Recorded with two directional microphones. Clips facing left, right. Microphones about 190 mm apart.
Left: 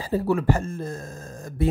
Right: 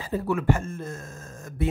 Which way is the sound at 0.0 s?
35° left (ahead or behind).